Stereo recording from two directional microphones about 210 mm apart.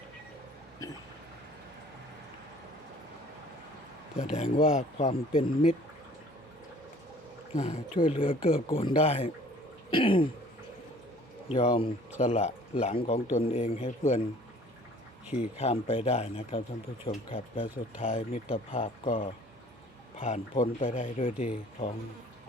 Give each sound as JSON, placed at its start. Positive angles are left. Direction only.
{"t": 4.2, "sound": "speech", "side_deg": 35}
{"t": 7.5, "sound": "speech", "side_deg": 35}
{"t": 11.5, "sound": "speech", "side_deg": 25}
{"t": 15.3, "sound": "speech", "side_deg": 30}